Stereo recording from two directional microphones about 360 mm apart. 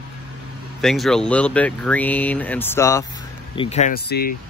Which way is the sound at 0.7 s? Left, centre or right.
Centre.